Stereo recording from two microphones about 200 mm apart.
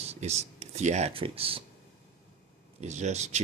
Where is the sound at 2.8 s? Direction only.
35° right (ahead or behind).